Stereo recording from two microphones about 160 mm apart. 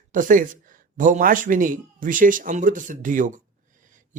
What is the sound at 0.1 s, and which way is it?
Speech, 55° right (ahead or behind).